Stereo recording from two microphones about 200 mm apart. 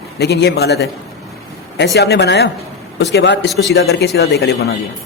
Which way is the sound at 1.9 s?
55° left (ahead or behind).